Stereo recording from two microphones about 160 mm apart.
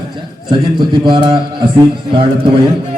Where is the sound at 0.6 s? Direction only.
30° right (ahead or behind).